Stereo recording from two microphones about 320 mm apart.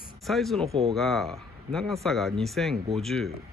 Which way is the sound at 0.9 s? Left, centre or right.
Centre.